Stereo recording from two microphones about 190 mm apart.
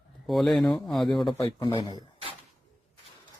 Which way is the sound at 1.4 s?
20° left (ahead or behind).